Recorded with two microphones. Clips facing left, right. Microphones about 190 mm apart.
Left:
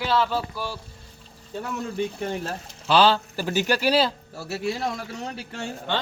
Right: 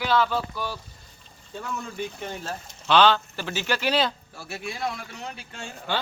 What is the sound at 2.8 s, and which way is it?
Speech, 35° left (ahead or behind).